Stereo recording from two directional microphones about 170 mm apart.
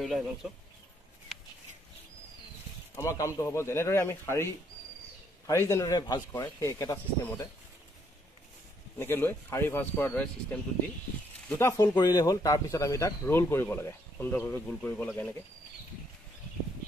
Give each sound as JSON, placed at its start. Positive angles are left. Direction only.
{"t": 0.0, "sound": "speech", "side_deg": 0}
{"t": 3.0, "sound": "speech", "side_deg": 15}
{"t": 5.5, "sound": "speech", "side_deg": 15}
{"t": 8.9, "sound": "speech", "side_deg": 10}